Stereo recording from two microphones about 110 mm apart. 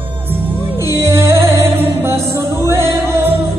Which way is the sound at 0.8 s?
25° right (ahead or behind).